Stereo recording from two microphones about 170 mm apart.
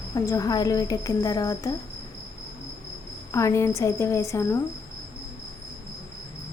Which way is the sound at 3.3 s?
15° left (ahead or behind).